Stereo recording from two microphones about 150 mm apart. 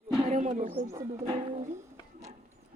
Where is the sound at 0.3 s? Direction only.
50° right (ahead or behind).